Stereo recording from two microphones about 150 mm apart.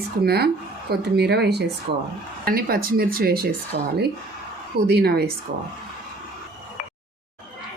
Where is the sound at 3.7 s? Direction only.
50° right (ahead or behind).